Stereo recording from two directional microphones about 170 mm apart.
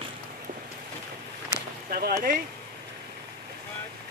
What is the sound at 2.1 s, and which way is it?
Speech, 55° right (ahead or behind).